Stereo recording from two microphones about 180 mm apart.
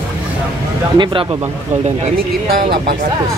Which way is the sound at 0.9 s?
25° right (ahead or behind).